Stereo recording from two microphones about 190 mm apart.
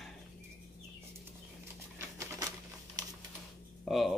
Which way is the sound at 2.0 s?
15° right (ahead or behind).